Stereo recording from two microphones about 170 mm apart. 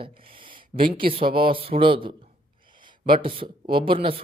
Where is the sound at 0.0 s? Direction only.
30° right (ahead or behind).